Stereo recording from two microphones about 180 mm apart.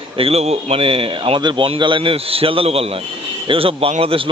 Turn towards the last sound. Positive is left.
turn(degrees=-30)  # may be behind; listen again after turning